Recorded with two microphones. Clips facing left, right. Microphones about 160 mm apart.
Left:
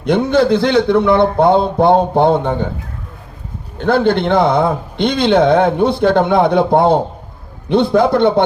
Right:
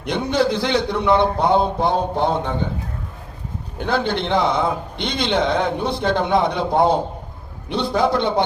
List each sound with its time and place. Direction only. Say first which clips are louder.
0.1 s a man's voice: left 7 dB; 60° left (ahead or behind)
3.8 s a man's voice: left 8 dB; 55° left (ahead or behind)